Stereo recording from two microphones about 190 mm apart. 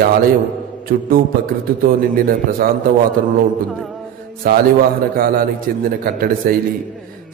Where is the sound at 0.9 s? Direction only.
50° right (ahead or behind).